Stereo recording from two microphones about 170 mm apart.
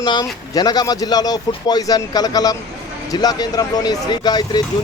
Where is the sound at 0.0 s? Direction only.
25° left (ahead or behind).